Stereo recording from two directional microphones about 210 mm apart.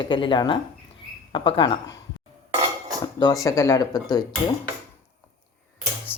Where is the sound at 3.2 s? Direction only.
15° left (ahead or behind).